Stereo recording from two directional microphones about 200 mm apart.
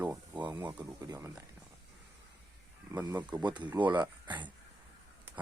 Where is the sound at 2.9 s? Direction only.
20° right (ahead or behind).